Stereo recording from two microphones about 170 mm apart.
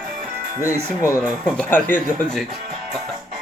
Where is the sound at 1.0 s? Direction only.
15° left (ahead or behind).